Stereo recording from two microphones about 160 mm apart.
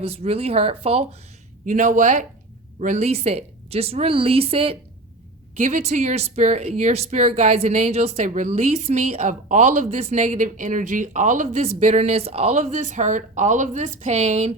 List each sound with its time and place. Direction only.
0.0 s a woman's voice: 40° right (ahead or behind)
1.6 s a woman's voice: 55° right (ahead or behind); by 4.8 s 35° right (ahead or behind)
5.7 s speech: 50° right (ahead or behind)